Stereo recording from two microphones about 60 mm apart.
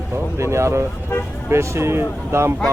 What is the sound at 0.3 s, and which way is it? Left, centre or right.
Speech, right.